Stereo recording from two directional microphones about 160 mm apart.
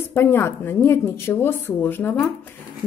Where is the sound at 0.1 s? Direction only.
15° left (ahead or behind).